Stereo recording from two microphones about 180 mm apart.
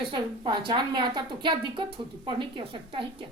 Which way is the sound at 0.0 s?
25° right (ahead or behind).